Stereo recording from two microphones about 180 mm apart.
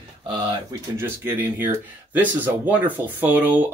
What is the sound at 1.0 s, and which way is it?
Speech, 10° right (ahead or behind).